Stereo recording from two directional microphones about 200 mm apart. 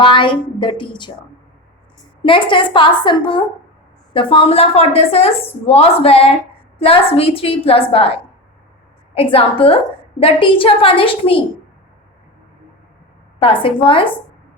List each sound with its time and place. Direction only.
0.0 s a woman's voice: 25° left (ahead or behind)
2.2 s a woman's voice: 25° left (ahead or behind)
13.4 s a woman's voice: 25° left (ahead or behind)